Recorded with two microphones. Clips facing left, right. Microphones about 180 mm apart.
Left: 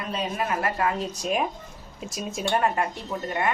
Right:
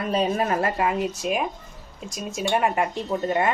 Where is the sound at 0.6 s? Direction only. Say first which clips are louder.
Right 3 dB; 20° right (ahead or behind).